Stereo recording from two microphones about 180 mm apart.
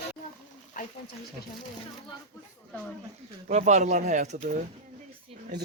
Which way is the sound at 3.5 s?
40° right (ahead or behind).